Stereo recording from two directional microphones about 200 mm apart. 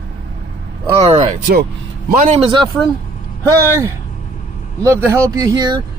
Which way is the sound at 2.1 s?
40° right (ahead or behind).